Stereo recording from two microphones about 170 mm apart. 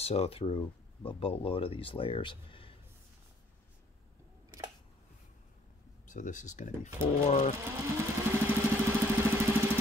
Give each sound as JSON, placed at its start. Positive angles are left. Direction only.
{"t": 0.0, "sound": "speech", "side_deg": 35}
{"t": 6.0, "sound": "speech", "side_deg": 50}
{"t": 7.7, "sound": "vehicle", "side_deg": -10}